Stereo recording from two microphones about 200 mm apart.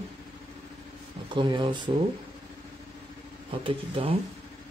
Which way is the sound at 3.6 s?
25° right (ahead or behind).